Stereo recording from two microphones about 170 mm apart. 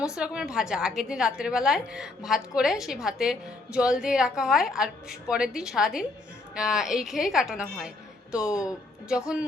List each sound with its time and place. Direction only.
0.0 s a woman's voice: 5° right (ahead or behind)